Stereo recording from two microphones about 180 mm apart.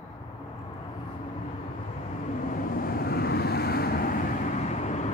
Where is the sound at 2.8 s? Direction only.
55° left (ahead or behind).